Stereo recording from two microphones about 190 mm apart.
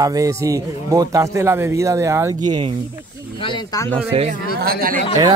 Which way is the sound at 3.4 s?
20° left (ahead or behind).